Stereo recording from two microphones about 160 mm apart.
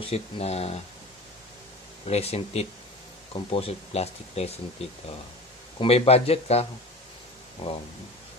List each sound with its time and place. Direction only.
0.0 s speech: 40° left (ahead or behind)
2.0 s speech: 40° left (ahead or behind)
5.8 s speech: 40° left (ahead or behind)
7.6 s speech: 40° left (ahead or behind)